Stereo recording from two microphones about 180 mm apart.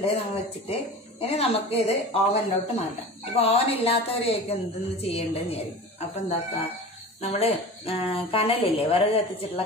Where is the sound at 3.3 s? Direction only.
35° left (ahead or behind).